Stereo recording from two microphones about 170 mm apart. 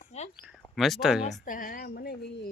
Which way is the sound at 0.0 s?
40° left (ahead or behind).